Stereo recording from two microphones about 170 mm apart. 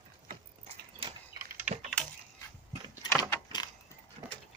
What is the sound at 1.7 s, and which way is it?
Typing, 10° right (ahead or behind).